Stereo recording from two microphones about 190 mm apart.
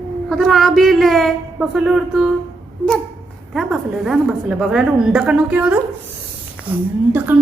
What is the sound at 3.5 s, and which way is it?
A woman's voice, centre (ahead or behind).